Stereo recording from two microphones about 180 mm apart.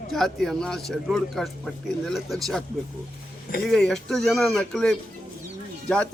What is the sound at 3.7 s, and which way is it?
Speech, 5° left (ahead or behind).